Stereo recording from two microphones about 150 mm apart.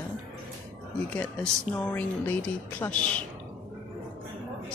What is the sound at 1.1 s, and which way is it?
Speech, 10° left (ahead or behind).